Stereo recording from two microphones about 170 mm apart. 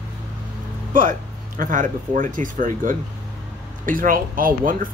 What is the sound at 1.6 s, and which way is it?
Speech, 50° right (ahead or behind).